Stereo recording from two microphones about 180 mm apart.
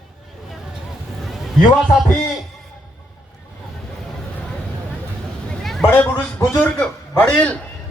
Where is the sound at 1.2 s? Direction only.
Centre (ahead or behind).